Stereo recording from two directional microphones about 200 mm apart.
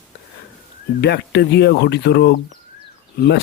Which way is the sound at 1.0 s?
55° left (ahead or behind).